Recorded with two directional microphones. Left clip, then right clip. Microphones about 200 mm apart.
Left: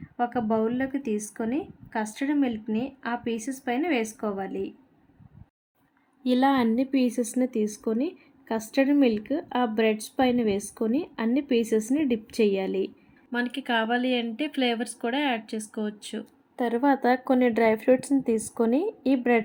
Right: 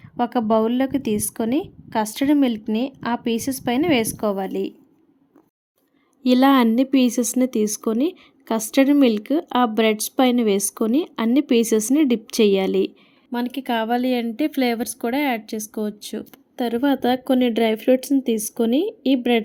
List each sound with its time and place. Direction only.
0.2 s speech: 45° right (ahead or behind)
6.2 s speech: 50° right (ahead or behind)
13.5 s speech: 35° right (ahead or behind)